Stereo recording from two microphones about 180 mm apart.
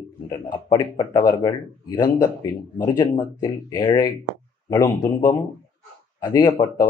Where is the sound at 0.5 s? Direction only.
20° left (ahead or behind).